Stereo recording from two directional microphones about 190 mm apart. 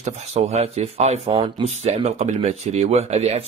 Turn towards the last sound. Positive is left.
turn(degrees=-35)  # may be behind; listen again after turning